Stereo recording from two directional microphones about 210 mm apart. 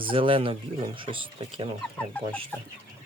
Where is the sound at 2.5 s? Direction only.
5° left (ahead or behind).